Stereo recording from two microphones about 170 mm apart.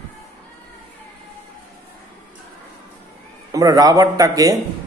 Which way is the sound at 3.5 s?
20° right (ahead or behind).